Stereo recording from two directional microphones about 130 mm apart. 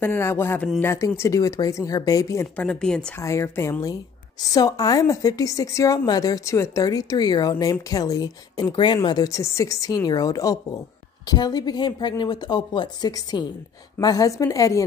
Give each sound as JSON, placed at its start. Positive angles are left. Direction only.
{"t": 0.0, "sound": "a woman's voice", "side_deg": 20}
{"t": 2.5, "sound": "speech", "side_deg": 10}
{"t": 3.2, "sound": "a woman's voice", "side_deg": 20}